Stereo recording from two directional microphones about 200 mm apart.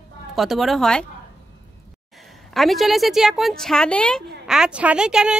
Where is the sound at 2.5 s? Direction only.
Centre (ahead or behind).